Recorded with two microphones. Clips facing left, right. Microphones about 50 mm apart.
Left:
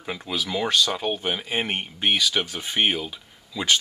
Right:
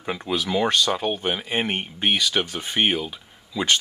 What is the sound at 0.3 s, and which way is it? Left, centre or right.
Speech, centre.